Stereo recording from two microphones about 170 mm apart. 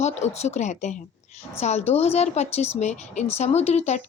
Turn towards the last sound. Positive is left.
turn(degrees=40)  # may be behind; listen again after turning